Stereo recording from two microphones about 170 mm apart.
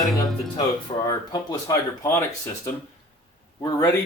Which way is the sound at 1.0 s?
20° left (ahead or behind).